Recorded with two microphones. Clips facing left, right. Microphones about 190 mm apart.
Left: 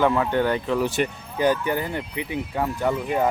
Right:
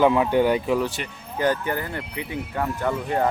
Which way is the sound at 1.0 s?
50° left (ahead or behind).